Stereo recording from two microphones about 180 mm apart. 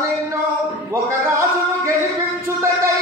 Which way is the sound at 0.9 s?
15° right (ahead or behind).